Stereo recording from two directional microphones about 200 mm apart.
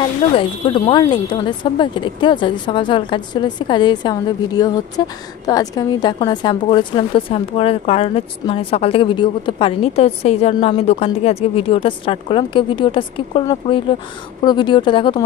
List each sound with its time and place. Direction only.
0.0 s speech: 25° left (ahead or behind)